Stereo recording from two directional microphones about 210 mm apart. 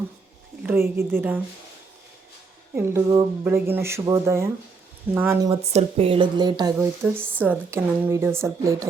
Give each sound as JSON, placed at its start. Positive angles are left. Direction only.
{"t": 0.6, "sound": "speech", "side_deg": -10}
{"t": 2.7, "sound": "speech", "side_deg": -10}
{"t": 5.6, "sound": "speech", "side_deg": -30}